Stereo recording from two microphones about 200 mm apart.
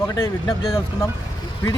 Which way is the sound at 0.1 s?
15° left (ahead or behind).